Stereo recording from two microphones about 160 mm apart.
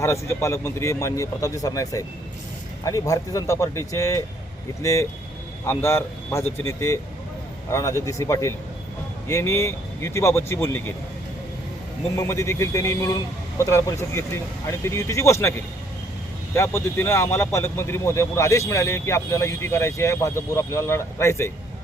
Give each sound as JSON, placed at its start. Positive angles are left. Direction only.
{"t": 0.0, "sound": "speech", "side_deg": 15}
{"t": 12.1, "sound": "speech", "side_deg": 20}
{"t": 16.6, "sound": "speech", "side_deg": 15}